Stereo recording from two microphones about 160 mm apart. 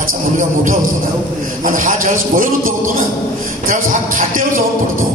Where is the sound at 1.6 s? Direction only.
55° right (ahead or behind).